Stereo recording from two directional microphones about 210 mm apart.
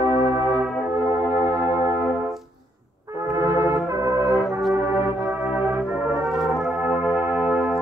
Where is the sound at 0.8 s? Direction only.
15° right (ahead or behind).